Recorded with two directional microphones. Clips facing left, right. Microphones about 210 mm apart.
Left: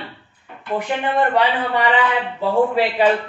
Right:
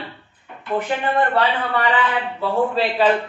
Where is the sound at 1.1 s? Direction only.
15° left (ahead or behind).